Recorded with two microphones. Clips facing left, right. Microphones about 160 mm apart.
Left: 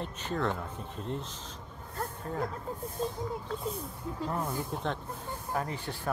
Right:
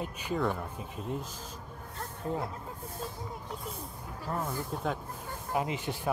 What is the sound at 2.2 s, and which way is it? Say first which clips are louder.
Speech: right 2 dB; 20° right (ahead or behind).